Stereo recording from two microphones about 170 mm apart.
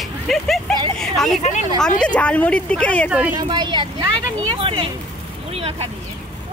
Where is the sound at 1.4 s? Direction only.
45° left (ahead or behind).